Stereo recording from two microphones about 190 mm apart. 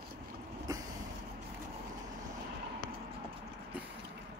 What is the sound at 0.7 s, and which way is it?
Vehicle, 20° right (ahead or behind).